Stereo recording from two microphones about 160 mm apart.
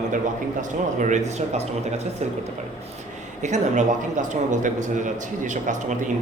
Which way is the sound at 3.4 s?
50° right (ahead or behind).